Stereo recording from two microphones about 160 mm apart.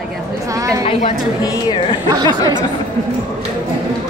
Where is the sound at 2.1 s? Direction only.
25° right (ahead or behind).